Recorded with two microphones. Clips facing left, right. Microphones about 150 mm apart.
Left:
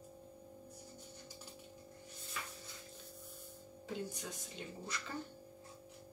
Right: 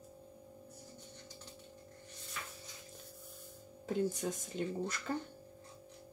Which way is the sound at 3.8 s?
45° right (ahead or behind).